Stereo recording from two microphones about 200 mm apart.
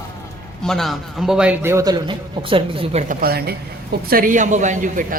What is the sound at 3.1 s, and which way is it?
A woman's voice, 50° right (ahead or behind).